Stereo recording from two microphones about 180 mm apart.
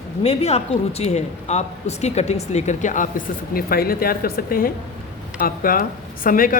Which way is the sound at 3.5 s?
55° left (ahead or behind).